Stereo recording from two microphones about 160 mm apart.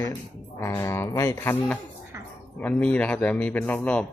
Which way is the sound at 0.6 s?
20° left (ahead or behind).